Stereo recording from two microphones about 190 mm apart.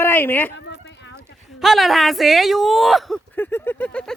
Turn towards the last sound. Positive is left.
turn(degrees=5)  # may be behind; listen again after turning